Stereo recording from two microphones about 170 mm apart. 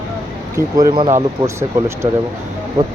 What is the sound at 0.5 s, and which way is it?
Speech, 20° right (ahead or behind).